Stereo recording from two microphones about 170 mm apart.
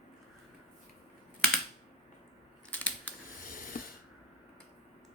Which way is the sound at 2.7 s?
10° left (ahead or behind).